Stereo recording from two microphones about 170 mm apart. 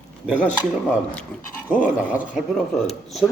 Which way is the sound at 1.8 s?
10° right (ahead or behind).